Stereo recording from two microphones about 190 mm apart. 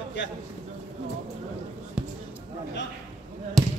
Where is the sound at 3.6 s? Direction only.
Centre (ahead or behind).